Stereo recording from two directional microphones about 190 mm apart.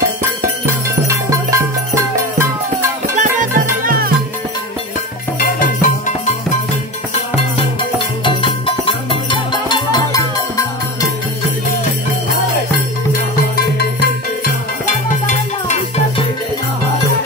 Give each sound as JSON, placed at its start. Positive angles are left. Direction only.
{"t": 1.0, "sound": "music", "side_deg": -15}
{"t": 3.2, "sound": "music", "side_deg": -45}
{"t": 5.4, "sound": "music", "side_deg": 45}
{"t": 8.2, "sound": "music", "side_deg": 25}
{"t": 13.4, "sound": "music", "side_deg": 55}
{"t": 15.2, "sound": "music", "side_deg": 35}